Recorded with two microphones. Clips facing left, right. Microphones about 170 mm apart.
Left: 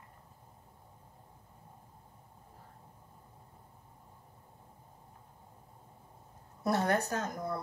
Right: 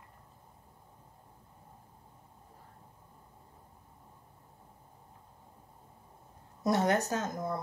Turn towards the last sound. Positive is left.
turn(degrees=-20)  # may be behind; listen again after turning